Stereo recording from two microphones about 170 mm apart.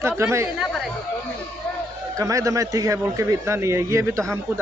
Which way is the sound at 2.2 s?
20° right (ahead or behind).